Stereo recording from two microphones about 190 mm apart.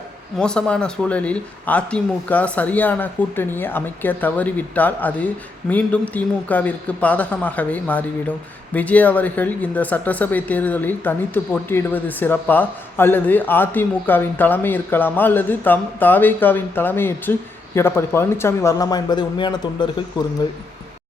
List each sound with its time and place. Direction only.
0.3 s speech: 5° left (ahead or behind); by 19.9 s 20° left (ahead or behind)